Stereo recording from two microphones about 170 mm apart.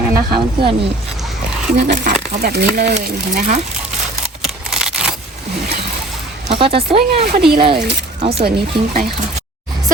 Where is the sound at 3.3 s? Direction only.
50° right (ahead or behind).